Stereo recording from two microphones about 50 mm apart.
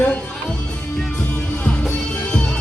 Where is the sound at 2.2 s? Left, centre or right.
Centre.